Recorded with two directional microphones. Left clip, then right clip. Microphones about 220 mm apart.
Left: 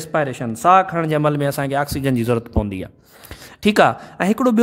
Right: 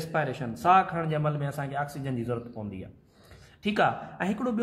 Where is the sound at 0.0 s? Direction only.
45° left (ahead or behind).